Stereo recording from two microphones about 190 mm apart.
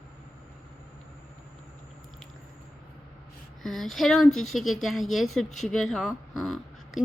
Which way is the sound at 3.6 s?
Centre (ahead or behind).